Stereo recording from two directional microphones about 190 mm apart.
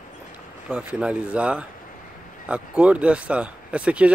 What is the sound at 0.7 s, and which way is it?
Speech, 5° right (ahead or behind).